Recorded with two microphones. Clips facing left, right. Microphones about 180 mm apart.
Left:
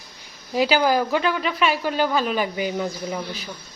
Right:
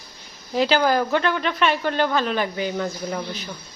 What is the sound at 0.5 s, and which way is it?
Speech, 10° left (ahead or behind).